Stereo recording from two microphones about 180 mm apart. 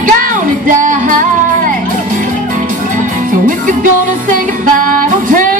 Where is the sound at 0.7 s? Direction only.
45° right (ahead or behind).